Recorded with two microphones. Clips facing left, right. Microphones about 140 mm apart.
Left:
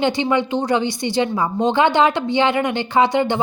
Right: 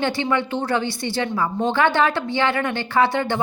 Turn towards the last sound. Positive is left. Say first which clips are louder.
# left 3 dB
turn(degrees=20)  # may be behind; listen again after turning